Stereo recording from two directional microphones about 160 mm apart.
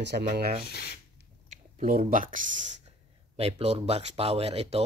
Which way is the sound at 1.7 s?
60° right (ahead or behind).